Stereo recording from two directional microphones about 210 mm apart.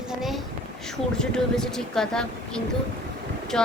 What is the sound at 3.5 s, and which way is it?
Speech, 5° left (ahead or behind).